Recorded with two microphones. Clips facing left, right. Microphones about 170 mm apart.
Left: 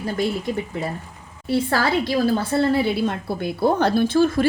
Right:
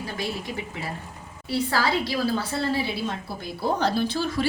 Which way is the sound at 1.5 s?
55° left (ahead or behind).